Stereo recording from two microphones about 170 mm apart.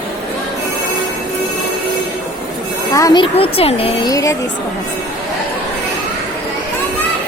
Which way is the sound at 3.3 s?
35° left (ahead or behind).